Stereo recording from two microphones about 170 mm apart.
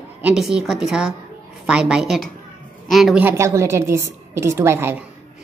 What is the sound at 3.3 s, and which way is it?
A woman's voice, 15° right (ahead or behind).